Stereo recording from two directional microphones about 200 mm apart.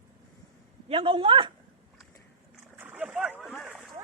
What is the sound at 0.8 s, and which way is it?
Speech, 25° right (ahead or behind).